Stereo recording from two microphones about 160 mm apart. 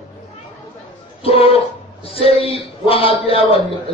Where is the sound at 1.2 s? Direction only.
35° left (ahead or behind).